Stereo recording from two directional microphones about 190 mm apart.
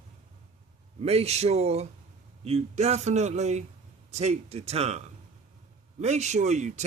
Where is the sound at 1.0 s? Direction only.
35° right (ahead or behind).